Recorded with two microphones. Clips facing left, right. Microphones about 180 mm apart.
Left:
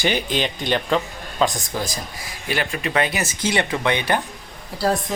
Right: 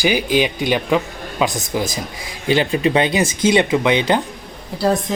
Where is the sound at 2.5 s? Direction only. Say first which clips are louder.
Right 8 dB; 25° right (ahead or behind).